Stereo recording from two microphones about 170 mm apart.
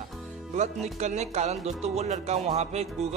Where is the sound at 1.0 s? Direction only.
40° right (ahead or behind).